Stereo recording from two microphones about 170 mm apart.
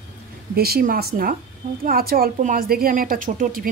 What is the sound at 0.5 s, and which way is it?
A woman's voice, 65° right (ahead or behind).